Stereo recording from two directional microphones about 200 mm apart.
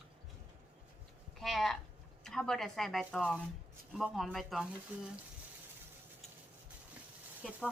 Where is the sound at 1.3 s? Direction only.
Centre (ahead or behind).